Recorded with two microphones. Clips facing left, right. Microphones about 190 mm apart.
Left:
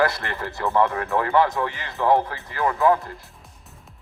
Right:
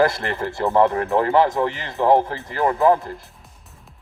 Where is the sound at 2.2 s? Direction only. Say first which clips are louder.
Right 3 dB; 40° right (ahead or behind).